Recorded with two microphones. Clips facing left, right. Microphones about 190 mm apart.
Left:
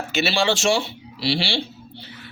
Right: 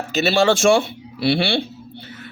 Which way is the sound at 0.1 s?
45° right (ahead or behind).